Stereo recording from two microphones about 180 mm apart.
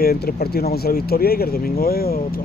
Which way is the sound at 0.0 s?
60° left (ahead or behind).